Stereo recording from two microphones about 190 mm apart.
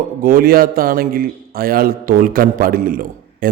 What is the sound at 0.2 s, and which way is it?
A man's voice, 50° right (ahead or behind).